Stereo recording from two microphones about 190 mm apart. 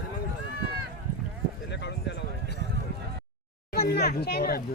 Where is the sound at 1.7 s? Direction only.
65° left (ahead or behind).